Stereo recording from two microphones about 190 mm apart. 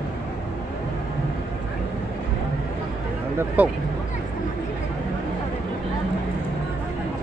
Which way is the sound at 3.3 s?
10° right (ahead or behind).